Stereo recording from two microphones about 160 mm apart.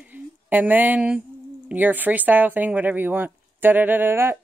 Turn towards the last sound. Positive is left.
turn(degrees=-15)  # may be behind; listen again after turning